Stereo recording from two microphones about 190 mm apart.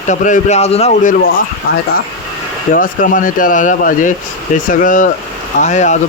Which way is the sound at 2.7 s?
45° left (ahead or behind).